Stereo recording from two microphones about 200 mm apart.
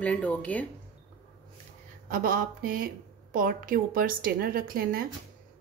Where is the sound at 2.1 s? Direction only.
45° right (ahead or behind).